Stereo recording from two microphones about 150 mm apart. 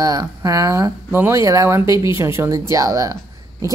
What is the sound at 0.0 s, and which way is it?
Speech, 25° right (ahead or behind).